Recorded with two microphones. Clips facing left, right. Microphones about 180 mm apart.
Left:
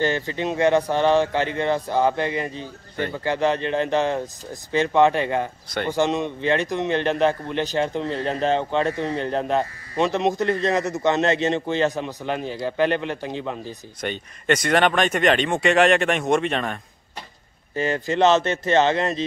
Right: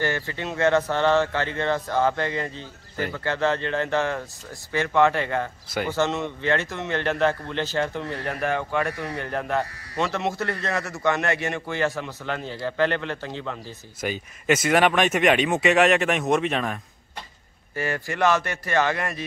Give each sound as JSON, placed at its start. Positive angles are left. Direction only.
{"t": 0.0, "sound": "a man's voice", "side_deg": 20}
{"t": 14.0, "sound": "speech", "side_deg": -5}
{"t": 17.7, "sound": "a man's voice", "side_deg": 20}